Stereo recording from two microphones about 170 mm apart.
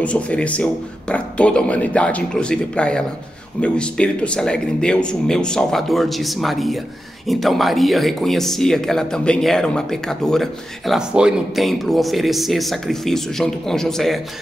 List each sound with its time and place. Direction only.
0.0 s speech: 5° left (ahead or behind)